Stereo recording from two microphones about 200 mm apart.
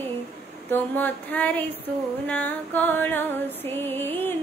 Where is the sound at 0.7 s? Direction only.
10° left (ahead or behind).